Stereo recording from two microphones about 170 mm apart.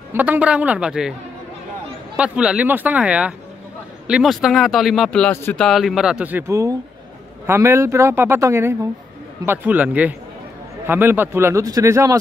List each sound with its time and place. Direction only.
0.1 s speech: 10° right (ahead or behind)
2.1 s speech: 5° right (ahead or behind)